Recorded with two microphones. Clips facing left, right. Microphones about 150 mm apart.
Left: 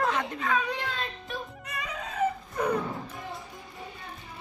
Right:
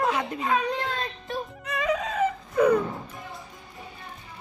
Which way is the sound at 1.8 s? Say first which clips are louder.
Right 4 dB; 90° right.